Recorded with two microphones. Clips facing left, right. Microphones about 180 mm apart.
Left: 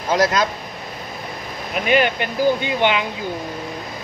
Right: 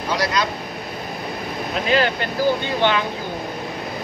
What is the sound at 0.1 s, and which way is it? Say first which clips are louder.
Speech: left 5 dB; 45° left (ahead or behind).